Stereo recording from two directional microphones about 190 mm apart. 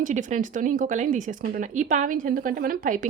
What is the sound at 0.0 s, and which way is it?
Speech, 40° right (ahead or behind).